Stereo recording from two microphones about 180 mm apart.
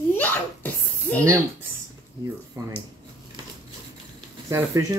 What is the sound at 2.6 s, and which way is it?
Speech, 20° right (ahead or behind).